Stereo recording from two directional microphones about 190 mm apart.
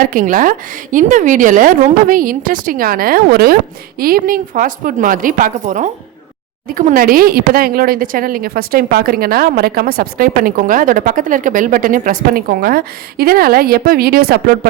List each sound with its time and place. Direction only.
0.0 s speech: 45° right (ahead or behind)